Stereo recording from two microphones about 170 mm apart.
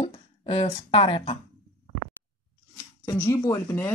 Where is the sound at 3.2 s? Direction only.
20° left (ahead or behind).